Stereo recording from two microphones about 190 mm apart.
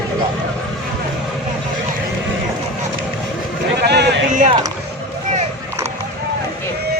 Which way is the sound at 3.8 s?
60° right (ahead or behind).